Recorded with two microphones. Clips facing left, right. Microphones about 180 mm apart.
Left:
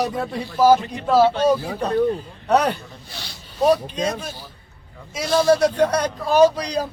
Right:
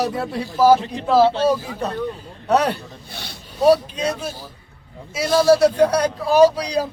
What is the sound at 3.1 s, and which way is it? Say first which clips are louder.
Speech: right 2 dB; 60° right (ahead or behind).